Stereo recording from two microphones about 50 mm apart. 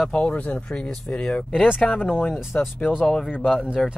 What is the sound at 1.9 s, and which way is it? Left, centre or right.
Speech, left.